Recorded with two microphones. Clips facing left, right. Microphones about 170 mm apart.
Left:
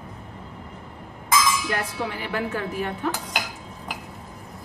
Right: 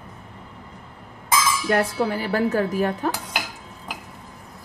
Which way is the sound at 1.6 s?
45° right (ahead or behind).